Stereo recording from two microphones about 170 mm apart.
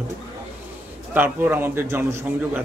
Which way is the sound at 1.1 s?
10° right (ahead or behind).